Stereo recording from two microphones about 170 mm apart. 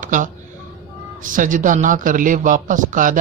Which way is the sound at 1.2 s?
50° right (ahead or behind).